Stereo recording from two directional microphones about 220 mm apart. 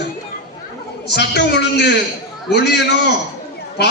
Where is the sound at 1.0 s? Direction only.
50° left (ahead or behind).